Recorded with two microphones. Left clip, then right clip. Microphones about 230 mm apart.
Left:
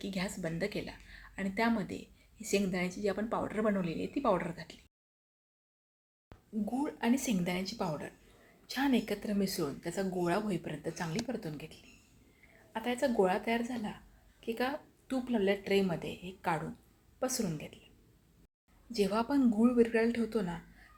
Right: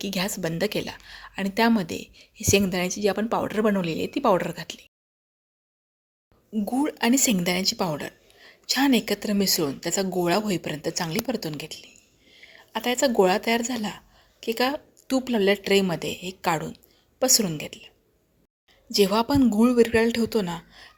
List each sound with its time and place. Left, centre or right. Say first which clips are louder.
0.0 s a woman's voice: right 10 dB; right
6.5 s a woman's voice: right 10 dB; right
18.9 s a woman's voice: right 11 dB; right